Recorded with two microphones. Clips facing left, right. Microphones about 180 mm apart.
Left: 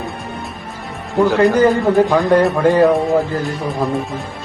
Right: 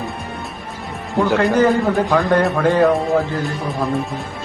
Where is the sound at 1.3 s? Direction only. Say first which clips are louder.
Left 2 dB; 5° left (ahead or behind).